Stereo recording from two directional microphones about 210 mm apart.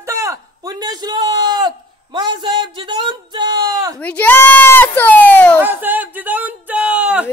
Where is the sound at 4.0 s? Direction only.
5° left (ahead or behind).